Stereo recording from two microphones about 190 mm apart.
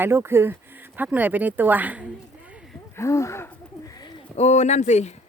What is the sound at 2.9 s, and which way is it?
Speech, 15° left (ahead or behind).